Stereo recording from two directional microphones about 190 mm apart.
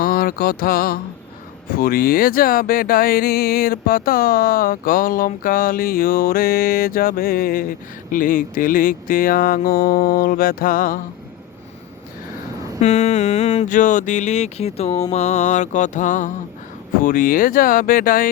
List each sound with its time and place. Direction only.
0.0 s mantra: 50° left (ahead or behind)
1.7 s speech: 50° left (ahead or behind)
12.8 s a sound: 35° left (ahead or behind)
17.0 s speech: 45° left (ahead or behind)